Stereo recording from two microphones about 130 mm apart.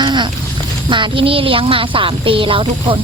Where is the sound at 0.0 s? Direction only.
35° right (ahead or behind).